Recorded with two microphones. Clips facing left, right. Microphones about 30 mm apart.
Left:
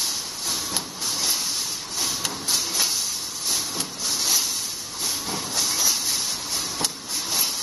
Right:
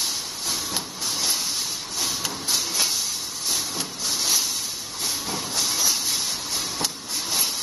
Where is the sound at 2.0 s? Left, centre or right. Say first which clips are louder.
Even; centre.